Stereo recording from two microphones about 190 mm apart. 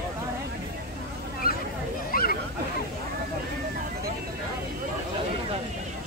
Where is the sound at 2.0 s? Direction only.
50° left (ahead or behind).